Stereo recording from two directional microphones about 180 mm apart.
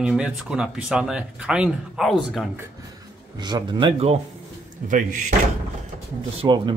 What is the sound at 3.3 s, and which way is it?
Speech, 25° right (ahead or behind).